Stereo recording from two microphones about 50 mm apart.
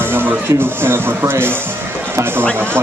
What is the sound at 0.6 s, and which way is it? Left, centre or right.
Speech, right.